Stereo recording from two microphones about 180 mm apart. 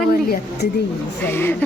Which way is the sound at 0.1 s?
55° left (ahead or behind).